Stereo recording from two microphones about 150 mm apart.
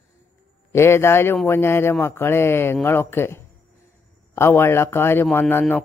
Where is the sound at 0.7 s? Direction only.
15° left (ahead or behind).